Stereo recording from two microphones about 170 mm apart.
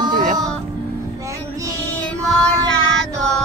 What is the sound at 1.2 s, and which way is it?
Child singing, 20° right (ahead or behind).